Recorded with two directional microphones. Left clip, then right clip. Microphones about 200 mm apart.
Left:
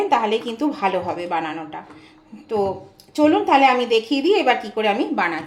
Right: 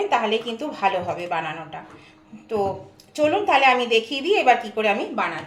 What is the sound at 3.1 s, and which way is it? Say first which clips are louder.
A woman's voice: left 3 dB; 35° left (ahead or behind).